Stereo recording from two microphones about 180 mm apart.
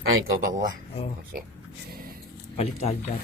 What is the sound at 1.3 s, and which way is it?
Speech, 55° right (ahead or behind).